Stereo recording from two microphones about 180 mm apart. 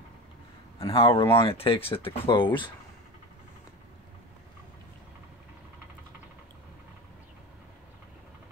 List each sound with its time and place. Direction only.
0.7 s speech: 30° left (ahead or behind)